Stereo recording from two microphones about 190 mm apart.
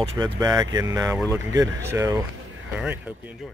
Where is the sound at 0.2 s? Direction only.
20° right (ahead or behind).